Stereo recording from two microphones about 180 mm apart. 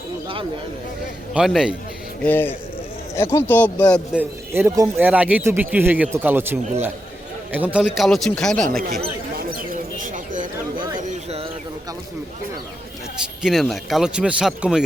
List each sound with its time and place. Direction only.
1.3 s speech: 5° right (ahead or behind)
2.2 s speech: 10° left (ahead or behind)
4.1 s a man's voice: 10° right (ahead or behind)
9.3 s a sound: 55° right (ahead or behind); by 11.4 s 40° right (ahead or behind)
13.4 s speech: centre (ahead or behind)